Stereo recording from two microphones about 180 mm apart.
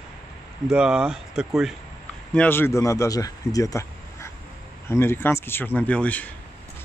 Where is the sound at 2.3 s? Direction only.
10° left (ahead or behind).